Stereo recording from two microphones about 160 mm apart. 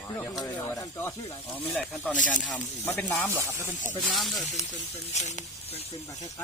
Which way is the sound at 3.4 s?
15° right (ahead or behind).